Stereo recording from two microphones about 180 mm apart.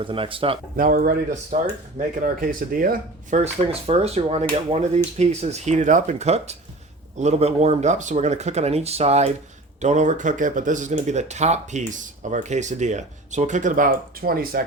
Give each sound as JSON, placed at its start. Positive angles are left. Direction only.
{"t": 0.0, "sound": "speech", "side_deg": -30}
{"t": 0.8, "sound": "speech", "side_deg": -50}